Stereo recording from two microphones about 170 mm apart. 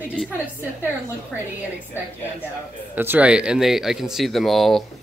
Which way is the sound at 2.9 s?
10° right (ahead or behind).